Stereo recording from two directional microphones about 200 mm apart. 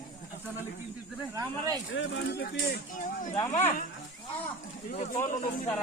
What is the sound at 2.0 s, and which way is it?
Speech, 55° left (ahead or behind).